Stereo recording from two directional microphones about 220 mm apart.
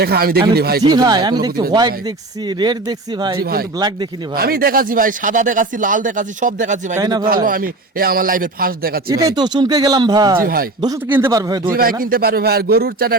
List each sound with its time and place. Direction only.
0.0 s a man's voice: 45° right (ahead or behind)
0.8 s speech: 20° right (ahead or behind)
3.4 s a man's voice: 45° right (ahead or behind)
3.8 s a man's voice: 20° right (ahead or behind)
4.4 s speech: 45° right (ahead or behind)
7.0 s a man's voice: 20° right (ahead or behind)
7.4 s speech: 40° right (ahead or behind)
9.1 s speech: 15° right (ahead or behind)
10.4 s speech: 40° right (ahead or behind)
10.8 s a man's voice: 15° right (ahead or behind)
11.7 s a man's voice: 40° right (ahead or behind)